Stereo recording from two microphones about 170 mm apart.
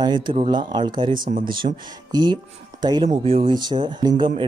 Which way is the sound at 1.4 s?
30° right (ahead or behind).